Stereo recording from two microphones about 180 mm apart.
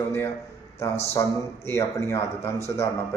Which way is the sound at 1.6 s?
15° left (ahead or behind).